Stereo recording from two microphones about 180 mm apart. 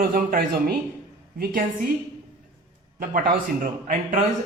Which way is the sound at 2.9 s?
50° right (ahead or behind).